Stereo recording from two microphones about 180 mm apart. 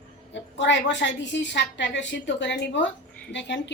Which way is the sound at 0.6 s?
80° left.